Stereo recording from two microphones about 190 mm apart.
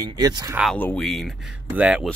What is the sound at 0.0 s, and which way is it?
Speech, 20° right (ahead or behind).